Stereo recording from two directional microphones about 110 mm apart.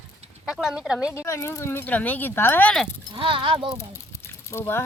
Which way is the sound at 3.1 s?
50° right (ahead or behind).